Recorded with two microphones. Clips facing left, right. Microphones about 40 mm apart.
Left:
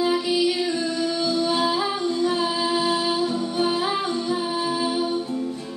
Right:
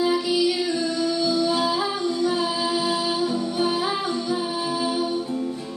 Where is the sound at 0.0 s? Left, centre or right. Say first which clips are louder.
Even; left.